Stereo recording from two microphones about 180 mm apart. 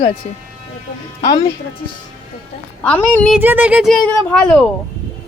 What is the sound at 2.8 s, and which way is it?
Speech, 5° left (ahead or behind).